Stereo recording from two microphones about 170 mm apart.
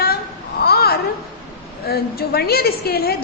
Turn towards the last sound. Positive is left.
turn(degrees=65)  # may be behind; listen again after turning